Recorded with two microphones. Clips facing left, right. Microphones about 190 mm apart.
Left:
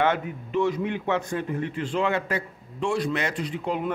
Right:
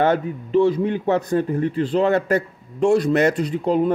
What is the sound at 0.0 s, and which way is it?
A man's voice, 35° right (ahead or behind).